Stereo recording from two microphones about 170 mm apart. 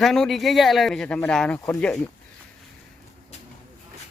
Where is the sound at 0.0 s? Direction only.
Centre (ahead or behind).